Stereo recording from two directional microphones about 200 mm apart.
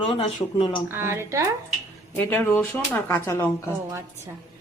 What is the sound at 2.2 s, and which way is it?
Speech, 10° left (ahead or behind).